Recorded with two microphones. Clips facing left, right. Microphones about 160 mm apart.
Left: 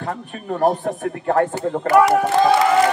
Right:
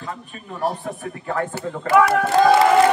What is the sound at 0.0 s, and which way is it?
A man's voice, 65° left (ahead or behind).